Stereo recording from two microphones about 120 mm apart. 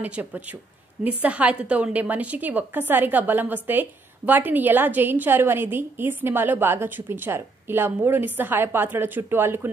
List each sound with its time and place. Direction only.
0.0 s a woman's voice: 15° right (ahead or behind)